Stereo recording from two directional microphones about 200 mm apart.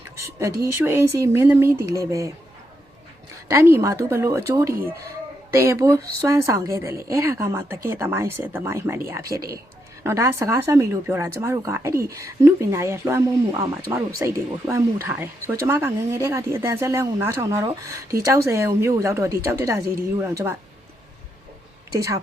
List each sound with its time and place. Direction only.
0.8 s speech: 10° right (ahead or behind)
3.5 s speech: 15° right (ahead or behind)
21.9 s speech: 15° right (ahead or behind)